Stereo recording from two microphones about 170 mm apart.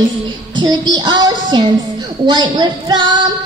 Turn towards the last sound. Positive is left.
turn(degrees=-25)  # may be behind; listen again after turning